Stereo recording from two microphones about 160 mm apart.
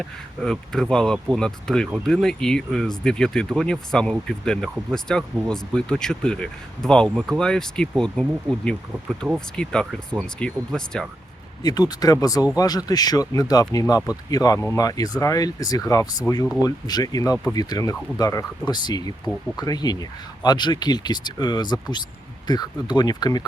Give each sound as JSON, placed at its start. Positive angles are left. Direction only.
{"t": 0.0, "sound": "speech", "side_deg": 5}
{"t": 11.6, "sound": "speech", "side_deg": 25}